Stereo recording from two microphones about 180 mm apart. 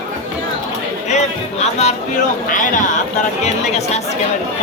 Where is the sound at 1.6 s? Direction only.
35° left (ahead or behind).